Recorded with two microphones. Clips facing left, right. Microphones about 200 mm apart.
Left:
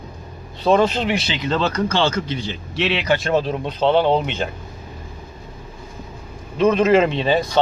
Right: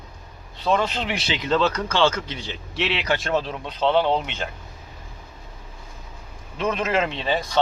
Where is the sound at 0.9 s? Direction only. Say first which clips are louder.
Left 7 dB; 45° left (ahead or behind).